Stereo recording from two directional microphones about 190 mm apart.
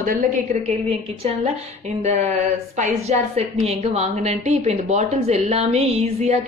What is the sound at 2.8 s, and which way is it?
A woman's voice, 35° right (ahead or behind).